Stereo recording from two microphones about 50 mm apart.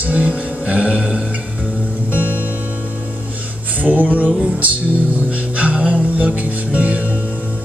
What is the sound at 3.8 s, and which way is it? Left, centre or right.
Music, right.